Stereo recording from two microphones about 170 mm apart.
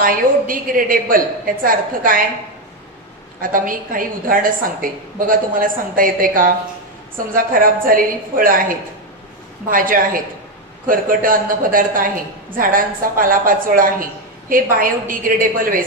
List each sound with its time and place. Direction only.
0.0 s a woman's voice: 55° right (ahead or behind)
3.5 s a woman's voice: 55° right (ahead or behind)